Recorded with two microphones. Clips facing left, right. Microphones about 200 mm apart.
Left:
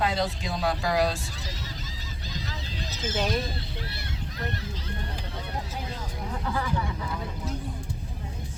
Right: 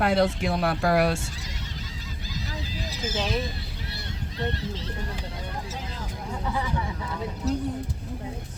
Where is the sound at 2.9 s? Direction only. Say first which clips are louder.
Left 1 dB; 10° right (ahead or behind).